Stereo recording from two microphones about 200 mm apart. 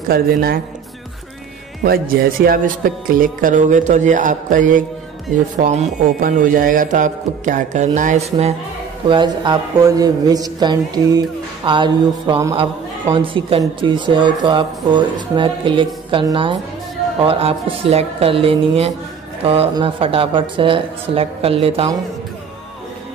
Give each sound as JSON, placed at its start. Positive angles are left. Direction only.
{"t": 0.1, "sound": "a man's voice", "side_deg": -50}
{"t": 1.9, "sound": "speech", "side_deg": -50}
{"t": 9.0, "sound": "speech", "side_deg": -25}